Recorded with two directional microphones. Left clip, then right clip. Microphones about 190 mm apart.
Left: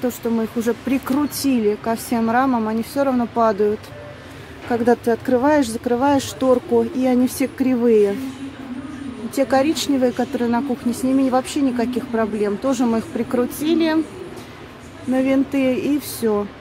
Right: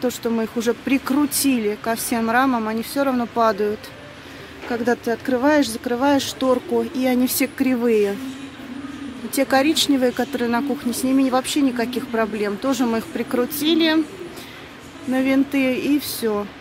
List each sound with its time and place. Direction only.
0.0 s speech: 10° right (ahead or behind)
5.0 s speech: 10° left (ahead or behind)
6.4 s speech: 10° right (ahead or behind)
7.0 s speech: 5° left (ahead or behind)
9.3 s speech: 5° left (ahead or behind)
15.1 s speech: 5° left (ahead or behind)